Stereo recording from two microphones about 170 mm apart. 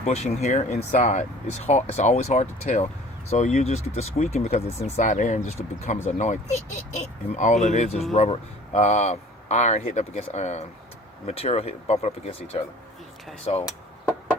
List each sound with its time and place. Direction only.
0.0 s speech: 40° left (ahead or behind)